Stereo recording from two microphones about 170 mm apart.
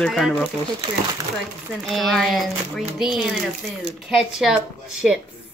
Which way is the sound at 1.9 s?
Centre (ahead or behind).